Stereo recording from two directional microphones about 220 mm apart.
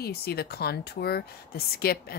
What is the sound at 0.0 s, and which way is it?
Speech, 45° left (ahead or behind).